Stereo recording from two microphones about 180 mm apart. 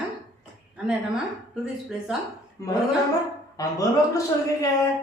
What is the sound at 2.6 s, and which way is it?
Speech, 15° left (ahead or behind).